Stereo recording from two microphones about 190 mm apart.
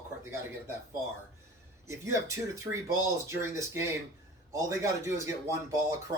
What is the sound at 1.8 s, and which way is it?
Speech, 15° right (ahead or behind).